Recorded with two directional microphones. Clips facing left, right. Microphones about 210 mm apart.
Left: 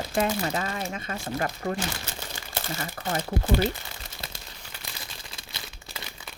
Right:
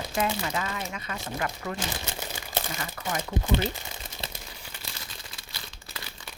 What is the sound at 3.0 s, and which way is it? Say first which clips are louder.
Speech: left 2 dB; 40° left (ahead or behind).